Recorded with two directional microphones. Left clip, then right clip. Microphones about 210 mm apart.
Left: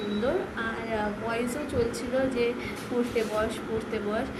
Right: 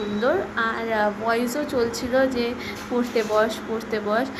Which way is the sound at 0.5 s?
20° right (ahead or behind).